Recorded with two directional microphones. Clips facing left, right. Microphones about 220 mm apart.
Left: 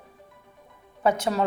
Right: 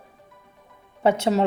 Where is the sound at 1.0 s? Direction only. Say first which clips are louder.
Right 4 dB; 25° right (ahead or behind).